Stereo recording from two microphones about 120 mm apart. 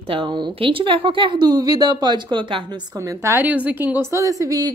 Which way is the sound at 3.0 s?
20° right (ahead or behind).